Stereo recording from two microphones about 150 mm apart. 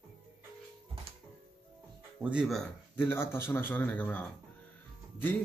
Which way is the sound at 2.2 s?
10° right (ahead or behind).